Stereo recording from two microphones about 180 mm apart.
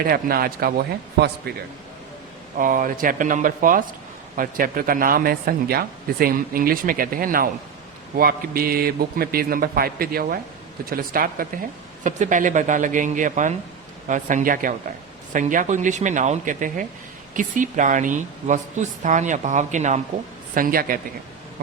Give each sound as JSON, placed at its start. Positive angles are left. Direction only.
{"t": 0.0, "sound": "a man's voice", "side_deg": -55}
{"t": 2.6, "sound": "a man's voice", "side_deg": -50}